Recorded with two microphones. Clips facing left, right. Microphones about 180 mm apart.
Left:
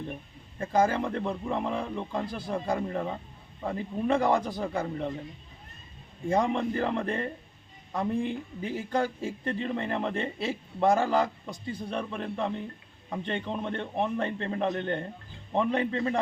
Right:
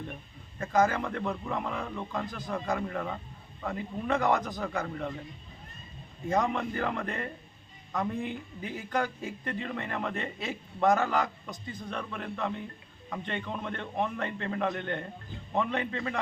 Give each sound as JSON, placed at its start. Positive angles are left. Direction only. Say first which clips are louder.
{"t": 0.6, "sound": "speech", "louder": "left 1 dB", "side_deg": 30}
{"t": 6.2, "sound": "a man's voice", "louder": "left 3 dB", "side_deg": 30}